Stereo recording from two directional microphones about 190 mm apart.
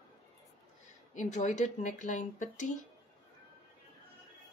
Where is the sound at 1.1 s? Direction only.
40° left (ahead or behind).